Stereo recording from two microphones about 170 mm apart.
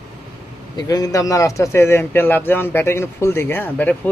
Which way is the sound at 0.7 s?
20° left (ahead or behind).